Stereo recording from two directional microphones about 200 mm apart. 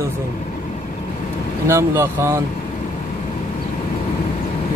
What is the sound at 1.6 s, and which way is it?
Speech, 15° right (ahead or behind).